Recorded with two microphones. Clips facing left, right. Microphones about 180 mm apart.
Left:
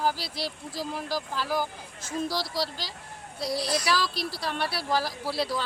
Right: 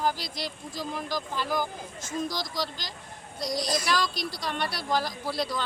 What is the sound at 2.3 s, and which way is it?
Speech, 30° left (ahead or behind).